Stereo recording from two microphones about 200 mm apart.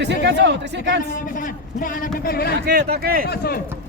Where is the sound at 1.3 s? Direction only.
45° left (ahead or behind).